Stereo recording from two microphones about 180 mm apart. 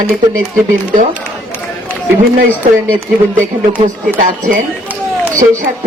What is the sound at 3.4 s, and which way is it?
A man's voice, 50° right (ahead or behind).